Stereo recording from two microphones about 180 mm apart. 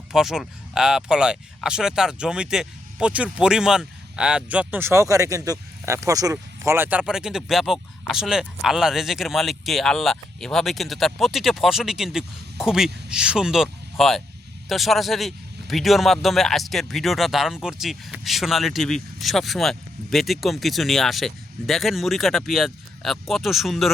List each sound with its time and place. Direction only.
0.1 s a man's voice: centre (ahead or behind)